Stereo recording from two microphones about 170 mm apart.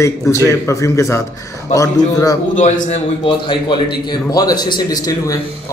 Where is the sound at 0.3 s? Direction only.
15° left (ahead or behind).